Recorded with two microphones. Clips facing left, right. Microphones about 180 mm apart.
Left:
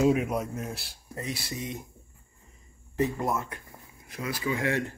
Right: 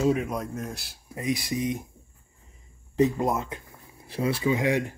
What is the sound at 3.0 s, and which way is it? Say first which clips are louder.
Speech: right 5 dB; 20° right (ahead or behind).